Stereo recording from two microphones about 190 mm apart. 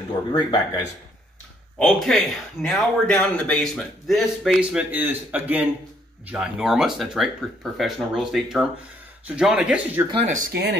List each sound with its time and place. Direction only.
0.1 s speech: 20° left (ahead or behind)
1.8 s speech: 5° left (ahead or behind)
10.1 s speech: 40° right (ahead or behind); by 10.8 s 55° right (ahead or behind)